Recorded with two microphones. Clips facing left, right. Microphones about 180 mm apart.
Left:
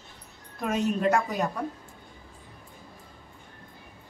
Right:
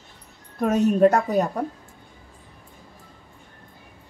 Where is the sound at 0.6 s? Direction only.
45° right (ahead or behind).